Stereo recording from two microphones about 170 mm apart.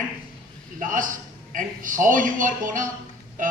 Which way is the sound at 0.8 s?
50° right (ahead or behind).